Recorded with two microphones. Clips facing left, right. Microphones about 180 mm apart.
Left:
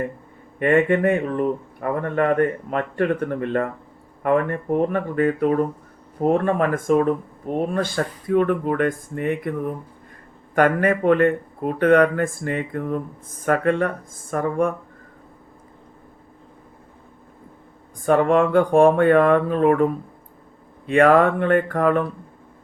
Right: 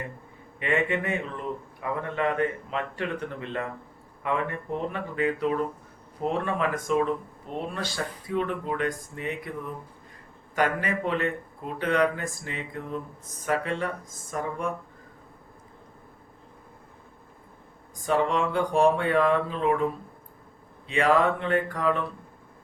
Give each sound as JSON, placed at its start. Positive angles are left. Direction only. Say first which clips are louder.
{"t": 0.6, "sound": "speech", "louder": "left 10 dB", "side_deg": 50}
{"t": 18.0, "sound": "speech", "louder": "left 8 dB", "side_deg": 55}